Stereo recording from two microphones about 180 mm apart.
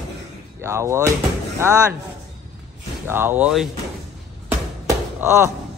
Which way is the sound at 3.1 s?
10° right (ahead or behind).